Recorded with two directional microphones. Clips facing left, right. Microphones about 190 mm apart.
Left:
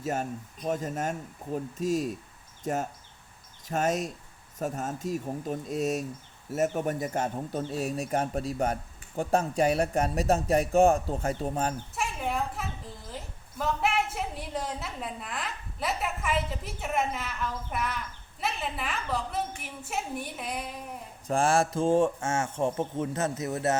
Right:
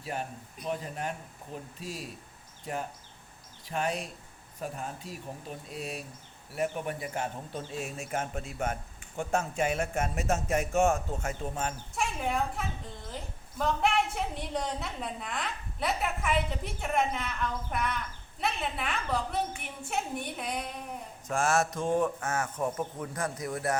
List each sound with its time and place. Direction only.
0.0 s speech: 45° left (ahead or behind)
11.9 s a woman's voice: centre (ahead or behind)
21.2 s a man's voice: 30° left (ahead or behind)